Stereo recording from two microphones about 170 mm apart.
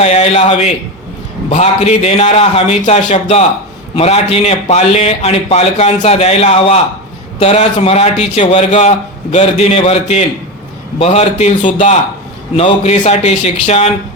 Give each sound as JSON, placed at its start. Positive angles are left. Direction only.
{"t": 0.0, "sound": "a man's voice", "side_deg": 40}